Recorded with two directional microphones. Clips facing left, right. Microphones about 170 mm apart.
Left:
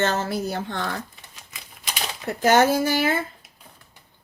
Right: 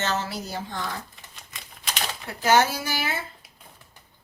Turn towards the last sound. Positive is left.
turn(degrees=50)  # may be behind; listen again after turning